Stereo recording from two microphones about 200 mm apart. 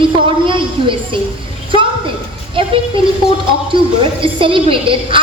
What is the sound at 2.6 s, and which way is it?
Speech, 25° right (ahead or behind).